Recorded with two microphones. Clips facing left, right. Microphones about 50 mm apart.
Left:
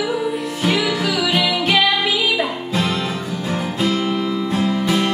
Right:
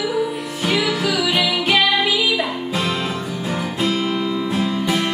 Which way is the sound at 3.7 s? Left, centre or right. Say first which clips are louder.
Left 1 dB; centre.